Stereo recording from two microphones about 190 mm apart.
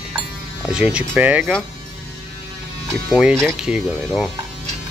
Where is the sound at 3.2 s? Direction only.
5° right (ahead or behind).